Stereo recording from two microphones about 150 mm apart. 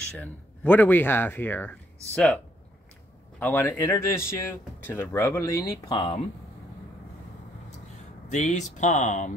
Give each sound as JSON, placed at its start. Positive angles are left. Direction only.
{"t": 0.2, "sound": "speech", "side_deg": 10}
{"t": 5.8, "sound": "speech", "side_deg": 30}
{"t": 8.3, "sound": "speech", "side_deg": 55}